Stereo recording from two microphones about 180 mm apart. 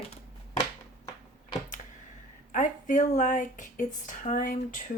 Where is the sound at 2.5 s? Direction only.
45° left (ahead or behind).